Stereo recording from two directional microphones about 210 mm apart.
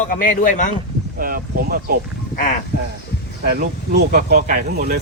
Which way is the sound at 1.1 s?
45° right (ahead or behind).